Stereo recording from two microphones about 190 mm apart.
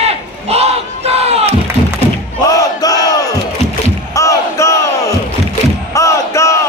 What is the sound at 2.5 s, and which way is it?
Battle cry, 20° left (ahead or behind).